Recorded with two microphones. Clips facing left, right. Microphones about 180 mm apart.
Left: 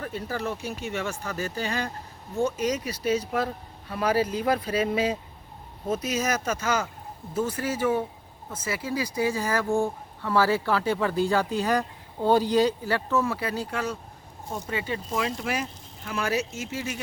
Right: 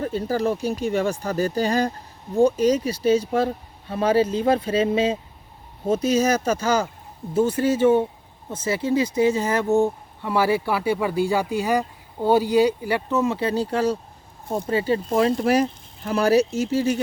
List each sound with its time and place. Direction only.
0.0 s speech: 30° right (ahead or behind)